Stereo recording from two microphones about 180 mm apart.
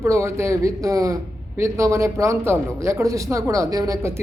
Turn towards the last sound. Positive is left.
turn(degrees=-15)  # may be behind; listen again after turning